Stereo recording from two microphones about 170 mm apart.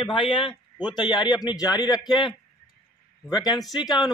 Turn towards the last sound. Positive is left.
turn(degrees=25)  # may be behind; listen again after turning